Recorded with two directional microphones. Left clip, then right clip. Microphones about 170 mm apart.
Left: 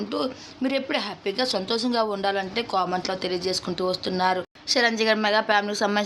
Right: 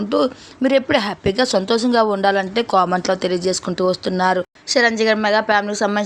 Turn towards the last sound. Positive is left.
turn(degrees=-30)  # may be behind; listen again after turning